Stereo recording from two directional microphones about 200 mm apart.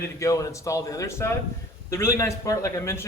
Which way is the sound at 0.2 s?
15° left (ahead or behind).